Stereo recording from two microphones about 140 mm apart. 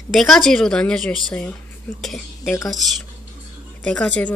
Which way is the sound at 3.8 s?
10° left (ahead or behind).